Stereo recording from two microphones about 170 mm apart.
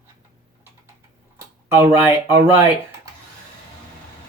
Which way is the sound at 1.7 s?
15° right (ahead or behind).